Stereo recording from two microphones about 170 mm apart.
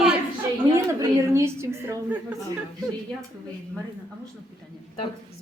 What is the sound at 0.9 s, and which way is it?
A woman's voice, 15° right (ahead or behind).